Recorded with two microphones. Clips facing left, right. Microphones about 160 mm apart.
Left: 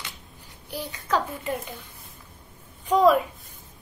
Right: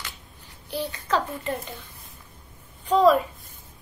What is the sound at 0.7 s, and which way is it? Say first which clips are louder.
Speech: right 1 dB; 10° left (ahead or behind).